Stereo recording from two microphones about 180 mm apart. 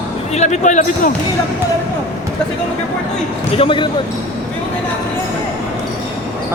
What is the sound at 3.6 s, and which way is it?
Speech, 30° left (ahead or behind).